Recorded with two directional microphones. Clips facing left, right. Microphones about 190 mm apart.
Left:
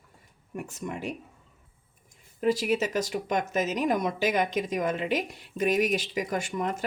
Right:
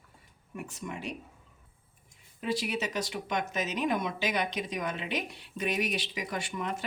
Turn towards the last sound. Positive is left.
turn(degrees=45)  # may be behind; listen again after turning